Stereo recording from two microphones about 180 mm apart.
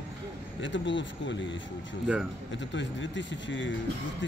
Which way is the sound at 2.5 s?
90° left.